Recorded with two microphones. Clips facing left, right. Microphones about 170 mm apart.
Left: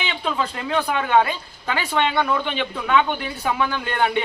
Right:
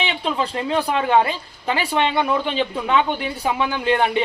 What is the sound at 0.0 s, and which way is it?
A woman's voice, 25° right (ahead or behind).